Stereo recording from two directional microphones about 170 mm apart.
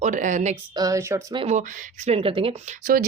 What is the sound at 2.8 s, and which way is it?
Speech, 55° right (ahead or behind).